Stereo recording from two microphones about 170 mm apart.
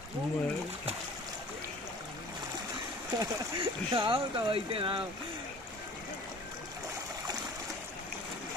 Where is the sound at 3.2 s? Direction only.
30° right (ahead or behind).